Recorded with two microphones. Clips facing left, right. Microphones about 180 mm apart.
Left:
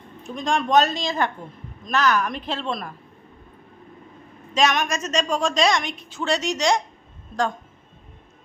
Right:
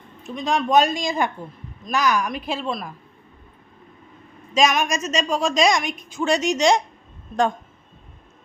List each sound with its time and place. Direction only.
0.2 s a woman's voice: 5° right (ahead or behind)
4.5 s a woman's voice: 10° right (ahead or behind)